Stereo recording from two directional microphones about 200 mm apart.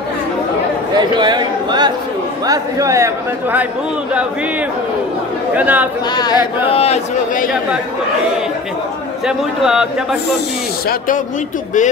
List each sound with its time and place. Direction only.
0.9 s a man's voice: 20° right (ahead or behind)
6.1 s speech: 25° left (ahead or behind)
9.2 s a man's voice: centre (ahead or behind)